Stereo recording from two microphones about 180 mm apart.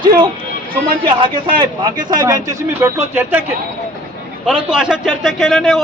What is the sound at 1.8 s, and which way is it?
Speech, 20° right (ahead or behind).